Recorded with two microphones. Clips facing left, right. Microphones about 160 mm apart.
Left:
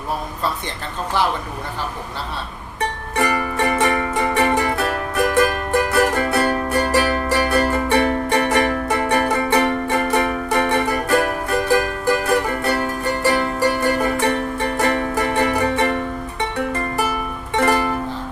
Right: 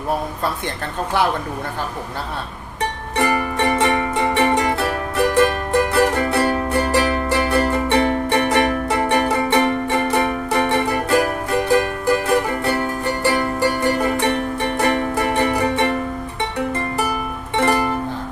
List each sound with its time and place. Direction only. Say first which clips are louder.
3.2 s music: right 1 dB; 25° right (ahead or behind)